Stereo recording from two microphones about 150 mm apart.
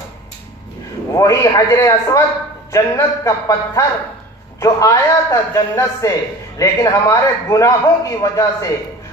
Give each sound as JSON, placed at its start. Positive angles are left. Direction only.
{"t": 1.1, "sound": "a man's voice", "side_deg": 25}